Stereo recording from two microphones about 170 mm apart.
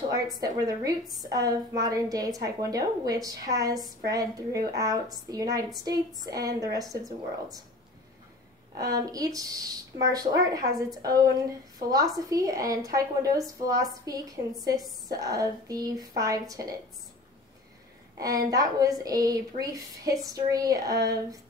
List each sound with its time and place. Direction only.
0.1 s a woman's voice: 20° right (ahead or behind)
8.7 s a woman's voice: 20° right (ahead or behind)
11.9 s a woman's voice: 20° right (ahead or behind)
18.2 s a woman's voice: 20° right (ahead or behind)